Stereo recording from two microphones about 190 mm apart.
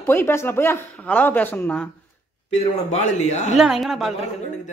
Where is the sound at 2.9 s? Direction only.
35° left (ahead or behind).